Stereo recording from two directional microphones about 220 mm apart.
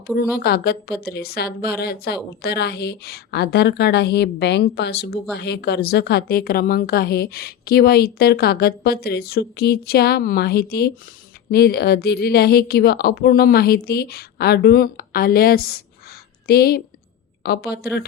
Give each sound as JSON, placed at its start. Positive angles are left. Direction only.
{"t": 0.2, "sound": "a woman's voice", "side_deg": 45}